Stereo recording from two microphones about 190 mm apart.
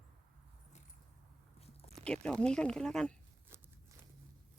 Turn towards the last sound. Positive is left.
turn(degrees=5)  # may be behind; listen again after turning